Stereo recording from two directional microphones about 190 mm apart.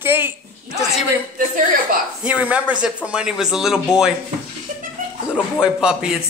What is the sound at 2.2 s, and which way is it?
A man's voice, 5° right (ahead or behind).